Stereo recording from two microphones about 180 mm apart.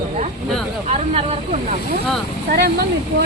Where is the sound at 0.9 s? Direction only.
35° right (ahead or behind).